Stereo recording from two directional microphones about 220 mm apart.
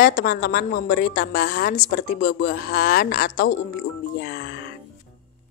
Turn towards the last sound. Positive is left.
turn(degrees=45)  # may be behind; listen again after turning